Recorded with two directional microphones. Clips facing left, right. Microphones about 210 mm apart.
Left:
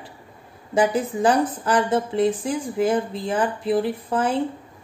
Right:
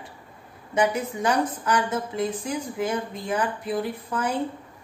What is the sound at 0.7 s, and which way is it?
A woman's voice, 30° left (ahead or behind).